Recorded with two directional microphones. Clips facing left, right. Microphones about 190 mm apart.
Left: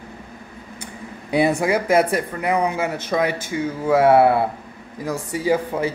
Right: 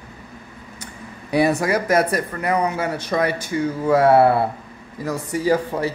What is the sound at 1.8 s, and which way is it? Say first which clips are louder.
Speech: left 1 dB; 10° left (ahead or behind).